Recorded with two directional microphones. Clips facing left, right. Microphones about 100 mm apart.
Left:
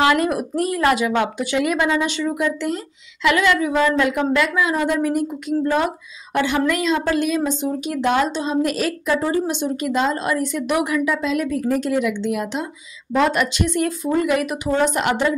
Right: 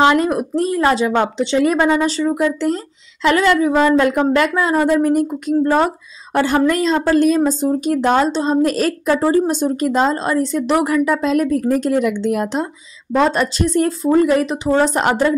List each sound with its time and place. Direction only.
0.0 s a woman's voice: 30° right (ahead or behind)